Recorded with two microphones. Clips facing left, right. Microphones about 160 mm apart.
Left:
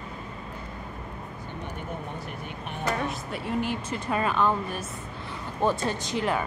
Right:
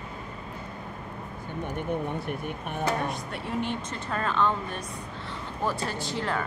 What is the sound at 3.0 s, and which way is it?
Speech, centre (ahead or behind).